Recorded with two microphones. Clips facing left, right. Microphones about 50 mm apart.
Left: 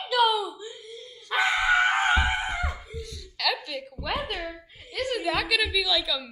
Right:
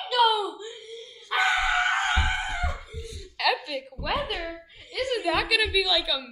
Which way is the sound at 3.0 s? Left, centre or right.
Centre.